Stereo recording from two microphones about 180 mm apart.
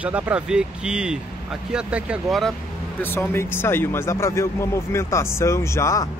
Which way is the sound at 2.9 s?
10° left (ahead or behind).